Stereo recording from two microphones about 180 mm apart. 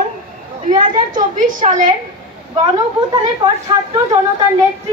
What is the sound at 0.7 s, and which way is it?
A woman's voice, 45° right (ahead or behind).